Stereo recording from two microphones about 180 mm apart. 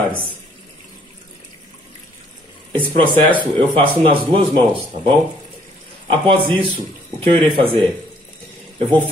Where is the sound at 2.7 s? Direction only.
30° right (ahead or behind).